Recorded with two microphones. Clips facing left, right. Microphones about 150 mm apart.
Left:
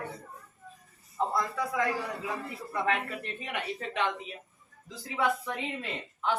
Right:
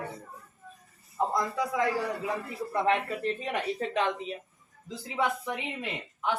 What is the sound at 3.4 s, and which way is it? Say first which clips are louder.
Speech: right 5 dB; 35° right (ahead or behind).